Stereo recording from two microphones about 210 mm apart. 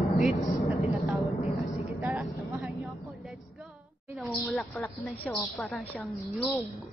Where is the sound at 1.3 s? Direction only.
30° left (ahead or behind).